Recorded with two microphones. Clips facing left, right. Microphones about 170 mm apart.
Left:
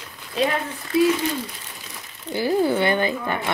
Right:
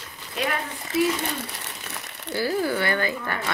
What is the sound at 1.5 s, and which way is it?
Crumpling, 70° right (ahead or behind).